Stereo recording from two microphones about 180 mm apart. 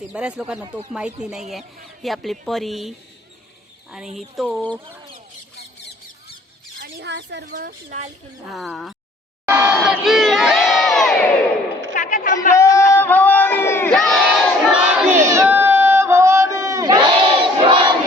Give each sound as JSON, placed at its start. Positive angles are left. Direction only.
{"t": 0.1, "sound": "speech", "side_deg": -5}
{"t": 4.2, "sound": "speech", "side_deg": 0}
{"t": 6.7, "sound": "chicken", "side_deg": -65}
{"t": 7.5, "sound": "speech", "side_deg": -45}
{"t": 8.5, "sound": "speech", "side_deg": 0}
{"t": 9.5, "sound": "a sound", "side_deg": -10}
{"t": 9.7, "sound": "crowd", "side_deg": 0}
{"t": 11.9, "sound": "a sound", "side_deg": 45}
{"t": 12.5, "sound": "battle cry", "side_deg": 15}
{"t": 15.3, "sound": "crowd", "side_deg": -15}